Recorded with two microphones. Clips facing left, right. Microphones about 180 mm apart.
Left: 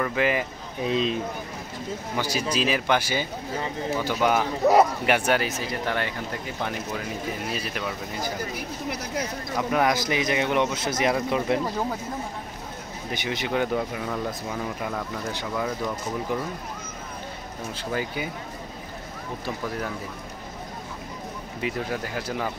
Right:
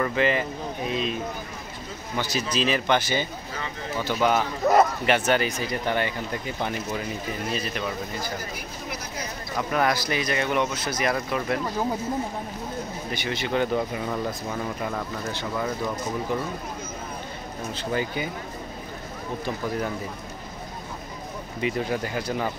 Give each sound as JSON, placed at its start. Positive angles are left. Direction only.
{"t": 0.0, "sound": "speech", "side_deg": 5}
{"t": 0.8, "sound": "speech", "side_deg": 30}
{"t": 2.1, "sound": "speech", "side_deg": 10}
{"t": 9.7, "sound": "speech", "side_deg": 15}
{"t": 13.1, "sound": "speech", "side_deg": 15}
{"t": 17.7, "sound": "speech", "side_deg": 5}
{"t": 21.5, "sound": "speech", "side_deg": 0}